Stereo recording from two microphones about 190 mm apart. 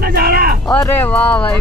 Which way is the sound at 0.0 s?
55° right (ahead or behind).